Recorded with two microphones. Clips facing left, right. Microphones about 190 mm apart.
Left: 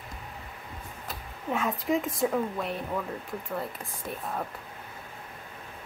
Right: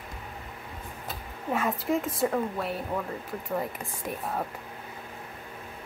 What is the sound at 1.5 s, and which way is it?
Speech, centre (ahead or behind).